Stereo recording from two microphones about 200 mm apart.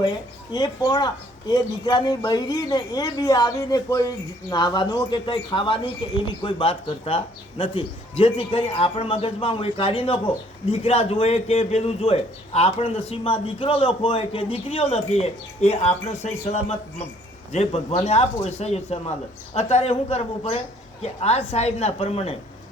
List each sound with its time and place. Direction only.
0.0 s a man's voice: 20° left (ahead or behind)